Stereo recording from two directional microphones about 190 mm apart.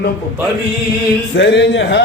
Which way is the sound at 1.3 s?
65° left (ahead or behind).